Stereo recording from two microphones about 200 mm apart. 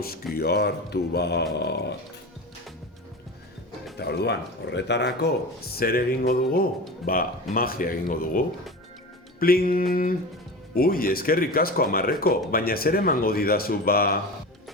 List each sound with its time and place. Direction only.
0.3 s speech: 55° left (ahead or behind)
3.9 s speech: 55° left (ahead or behind)